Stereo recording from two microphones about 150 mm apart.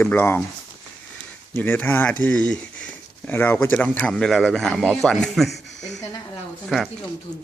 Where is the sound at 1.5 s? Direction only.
10° left (ahead or behind).